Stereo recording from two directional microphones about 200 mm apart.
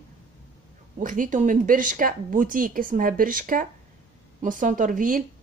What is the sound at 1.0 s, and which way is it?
A woman's voice, 40° right (ahead or behind).